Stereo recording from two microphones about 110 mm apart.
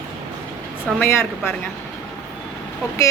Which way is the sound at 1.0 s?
25° left (ahead or behind).